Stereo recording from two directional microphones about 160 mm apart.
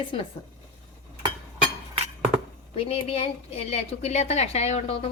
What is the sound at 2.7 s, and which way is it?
A woman's voice, 40° left (ahead or behind).